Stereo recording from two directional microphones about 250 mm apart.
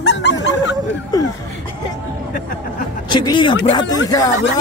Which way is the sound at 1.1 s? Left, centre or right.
Centre.